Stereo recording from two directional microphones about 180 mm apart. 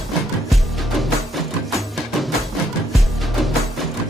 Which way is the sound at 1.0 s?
Centre (ahead or behind).